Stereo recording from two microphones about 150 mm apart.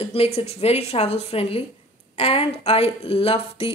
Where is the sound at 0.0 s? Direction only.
40° left (ahead or behind).